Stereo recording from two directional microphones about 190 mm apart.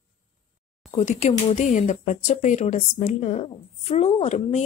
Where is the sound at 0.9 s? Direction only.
35° left (ahead or behind).